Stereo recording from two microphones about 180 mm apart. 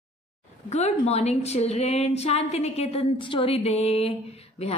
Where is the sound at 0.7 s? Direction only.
40° left (ahead or behind).